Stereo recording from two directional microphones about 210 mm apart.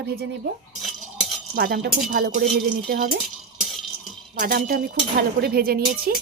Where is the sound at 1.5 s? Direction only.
50° right (ahead or behind).